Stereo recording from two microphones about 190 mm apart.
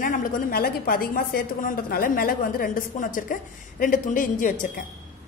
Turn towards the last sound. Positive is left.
turn(degrees=45)  # may be behind; listen again after turning